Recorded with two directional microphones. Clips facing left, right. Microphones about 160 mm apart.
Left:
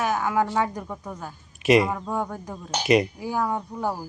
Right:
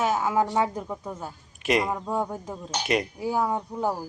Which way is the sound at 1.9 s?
15° right (ahead or behind).